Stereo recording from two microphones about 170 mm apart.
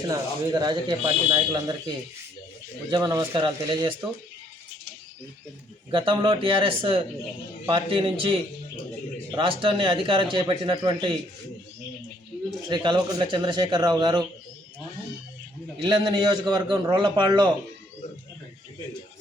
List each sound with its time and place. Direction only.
0.1 s a man's voice: 25° right (ahead or behind)
2.9 s a man's voice: 25° right (ahead or behind)
5.9 s a man's voice: 30° right (ahead or behind)
12.6 s a man's voice: 30° right (ahead or behind)
15.8 s a man's voice: 25° right (ahead or behind)